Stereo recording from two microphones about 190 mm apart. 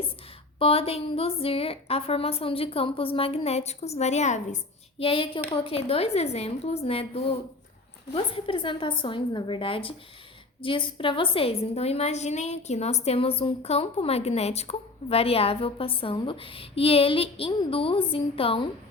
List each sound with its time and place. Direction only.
0.6 s a woman's voice: 30° left (ahead or behind)